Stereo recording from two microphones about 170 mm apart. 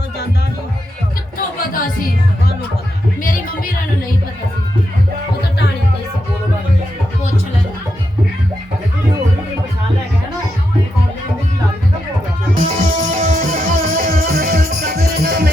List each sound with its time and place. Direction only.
12.5 s music: 45° right (ahead or behind); by 15.4 s 65° right (ahead or behind)